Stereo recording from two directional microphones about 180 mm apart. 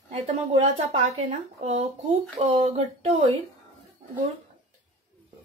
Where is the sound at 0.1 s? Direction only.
35° right (ahead or behind).